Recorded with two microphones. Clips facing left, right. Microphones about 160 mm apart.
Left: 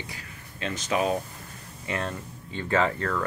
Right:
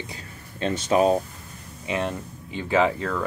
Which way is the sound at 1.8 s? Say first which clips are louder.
Right 4 dB; 20° right (ahead or behind).